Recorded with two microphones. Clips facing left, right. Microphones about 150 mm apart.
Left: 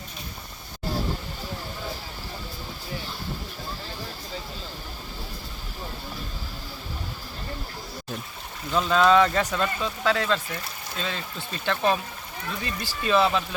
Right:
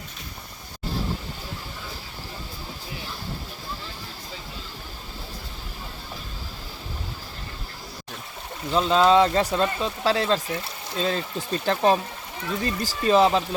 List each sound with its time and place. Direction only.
8.7 s speech: 25° right (ahead or behind)